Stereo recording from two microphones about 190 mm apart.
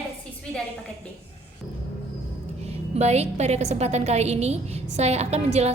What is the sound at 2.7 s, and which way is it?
A woman's voice, 35° right (ahead or behind).